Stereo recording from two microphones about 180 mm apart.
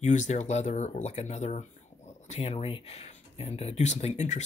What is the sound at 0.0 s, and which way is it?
Speech, 40° left (ahead or behind).